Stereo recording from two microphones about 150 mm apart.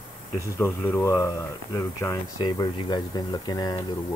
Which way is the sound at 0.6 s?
15° left (ahead or behind).